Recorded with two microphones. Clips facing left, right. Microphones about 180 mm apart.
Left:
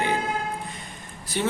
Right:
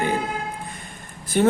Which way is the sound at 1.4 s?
50° right (ahead or behind).